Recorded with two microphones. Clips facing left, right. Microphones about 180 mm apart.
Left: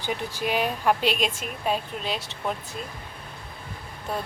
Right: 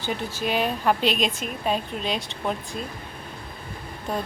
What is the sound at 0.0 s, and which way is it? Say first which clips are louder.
A woman's voice: right 1 dB; 10° left (ahead or behind).